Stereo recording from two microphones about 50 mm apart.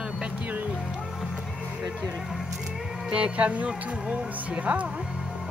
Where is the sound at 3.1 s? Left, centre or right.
Right.